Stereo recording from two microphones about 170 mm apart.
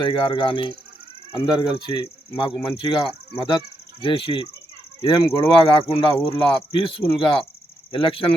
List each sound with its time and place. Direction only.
0.0 s speech: 30° left (ahead or behind)
1.9 s speech: 30° left (ahead or behind)